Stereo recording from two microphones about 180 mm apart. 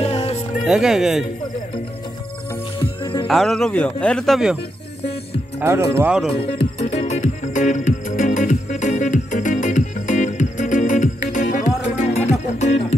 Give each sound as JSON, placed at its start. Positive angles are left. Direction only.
{"t": 0.0, "sound": "music", "side_deg": 35}
{"t": 0.7, "sound": "speech", "side_deg": 0}
{"t": 2.5, "sound": "music", "side_deg": 20}
{"t": 3.3, "sound": "speech", "side_deg": 0}
{"t": 5.6, "sound": "speech", "side_deg": -15}
{"t": 6.3, "sound": "music", "side_deg": 30}